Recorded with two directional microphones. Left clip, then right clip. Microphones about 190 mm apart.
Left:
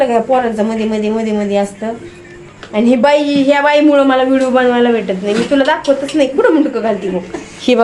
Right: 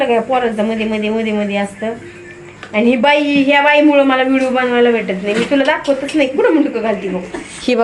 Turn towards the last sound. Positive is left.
turn(degrees=10)  # may be behind; listen again after turning